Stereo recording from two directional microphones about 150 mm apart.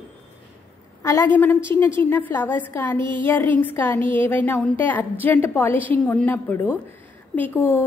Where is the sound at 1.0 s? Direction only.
15° left (ahead or behind).